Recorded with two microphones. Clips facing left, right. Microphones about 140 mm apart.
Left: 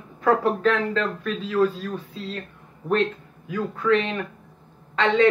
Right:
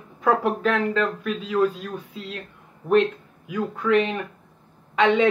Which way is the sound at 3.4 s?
10° right (ahead or behind).